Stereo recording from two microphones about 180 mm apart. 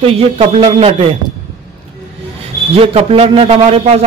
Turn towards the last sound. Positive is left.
turn(degrees=-35)  # may be behind; listen again after turning